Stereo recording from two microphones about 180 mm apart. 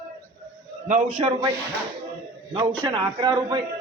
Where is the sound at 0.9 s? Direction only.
40° right (ahead or behind).